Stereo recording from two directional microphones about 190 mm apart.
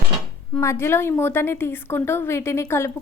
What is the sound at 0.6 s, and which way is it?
Speech, 15° left (ahead or behind).